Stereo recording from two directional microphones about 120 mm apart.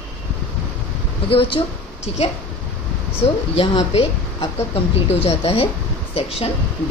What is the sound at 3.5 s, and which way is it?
Speech, 55° left (ahead or behind).